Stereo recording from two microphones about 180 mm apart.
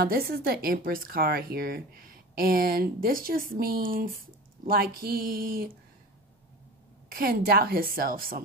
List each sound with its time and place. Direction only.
0.0 s speech: 55° right (ahead or behind)
7.1 s speech: 55° right (ahead or behind)